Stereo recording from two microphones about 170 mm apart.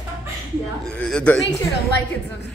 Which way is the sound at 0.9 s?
5° left (ahead or behind).